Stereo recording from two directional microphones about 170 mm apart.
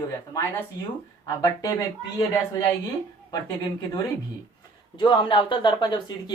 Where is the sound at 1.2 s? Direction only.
20° left (ahead or behind).